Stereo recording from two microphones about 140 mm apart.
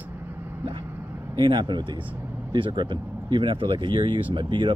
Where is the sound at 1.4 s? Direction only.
35° right (ahead or behind).